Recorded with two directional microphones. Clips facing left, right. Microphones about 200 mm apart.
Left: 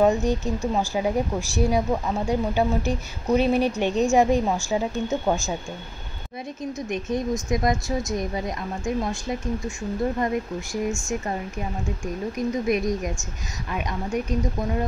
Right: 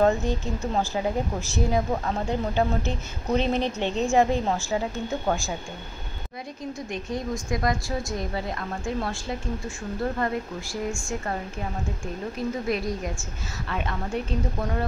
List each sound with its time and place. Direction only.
0.0 s speech: 15° left (ahead or behind)
6.9 s a woman's voice: 20° left (ahead or behind)
12.4 s speech: 15° left (ahead or behind)